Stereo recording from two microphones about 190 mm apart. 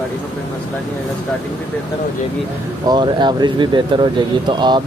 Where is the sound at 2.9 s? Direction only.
25° right (ahead or behind).